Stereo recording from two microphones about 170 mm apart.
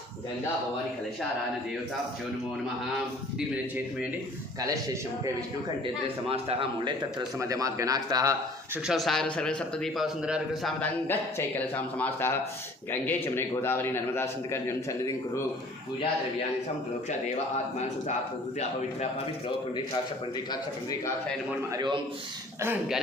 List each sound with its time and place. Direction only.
5.8 s speech: 35° right (ahead or behind); by 8.8 s 20° right (ahead or behind)
8.9 s a man's voice: centre (ahead or behind); by 15.1 s 15° left (ahead or behind)
21.7 s speech: 25° right (ahead or behind)
22.6 s speech: 10° right (ahead or behind)